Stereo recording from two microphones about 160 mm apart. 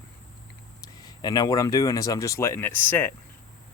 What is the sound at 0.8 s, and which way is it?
Speech, 25° left (ahead or behind).